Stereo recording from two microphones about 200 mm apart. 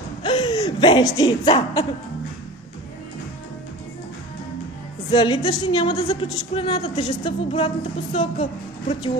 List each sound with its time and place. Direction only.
0.2 s speech: 25° left (ahead or behind)
5.1 s a woman's voice: 25° left (ahead or behind)